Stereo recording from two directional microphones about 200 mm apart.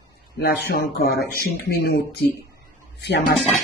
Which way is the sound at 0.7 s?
50° left (ahead or behind).